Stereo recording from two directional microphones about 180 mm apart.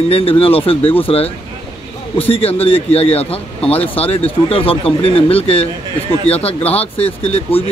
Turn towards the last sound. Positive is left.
turn(degrees=35)  # may be behind; listen again after turning